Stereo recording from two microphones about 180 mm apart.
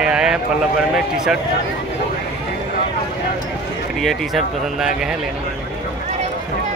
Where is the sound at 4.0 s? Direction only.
Centre (ahead or behind).